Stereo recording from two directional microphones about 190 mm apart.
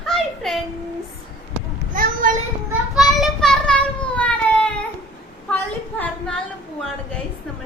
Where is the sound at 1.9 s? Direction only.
45° right (ahead or behind).